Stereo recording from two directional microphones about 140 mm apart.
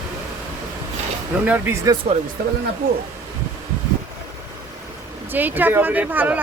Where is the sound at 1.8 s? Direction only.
35° right (ahead or behind).